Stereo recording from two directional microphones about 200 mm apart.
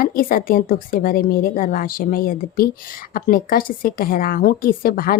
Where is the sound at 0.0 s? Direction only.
45° left (ahead or behind).